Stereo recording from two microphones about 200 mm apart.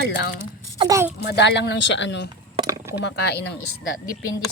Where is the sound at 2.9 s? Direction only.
55° left (ahead or behind).